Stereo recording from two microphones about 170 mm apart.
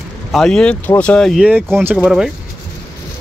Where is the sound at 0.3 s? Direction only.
5° left (ahead or behind).